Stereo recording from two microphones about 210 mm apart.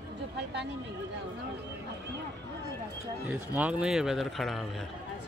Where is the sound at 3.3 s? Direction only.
5° right (ahead or behind).